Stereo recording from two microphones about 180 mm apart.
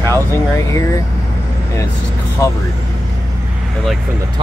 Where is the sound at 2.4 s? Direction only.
20° left (ahead or behind).